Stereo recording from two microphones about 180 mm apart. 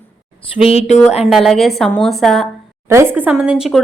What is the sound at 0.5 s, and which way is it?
Speech, 35° left (ahead or behind).